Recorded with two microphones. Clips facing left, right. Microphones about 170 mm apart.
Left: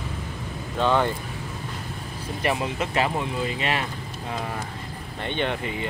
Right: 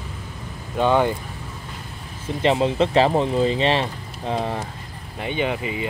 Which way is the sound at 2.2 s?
25° right (ahead or behind).